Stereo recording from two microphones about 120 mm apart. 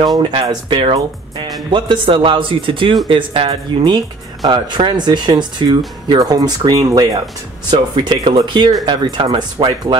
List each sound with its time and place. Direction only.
0.0 s speech: 40° right (ahead or behind)
7.7 s speech: 45° right (ahead or behind)